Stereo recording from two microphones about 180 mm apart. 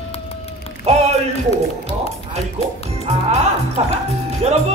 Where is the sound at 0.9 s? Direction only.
35° right (ahead or behind).